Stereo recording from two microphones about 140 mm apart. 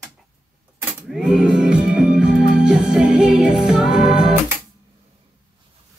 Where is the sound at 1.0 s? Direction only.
5° right (ahead or behind).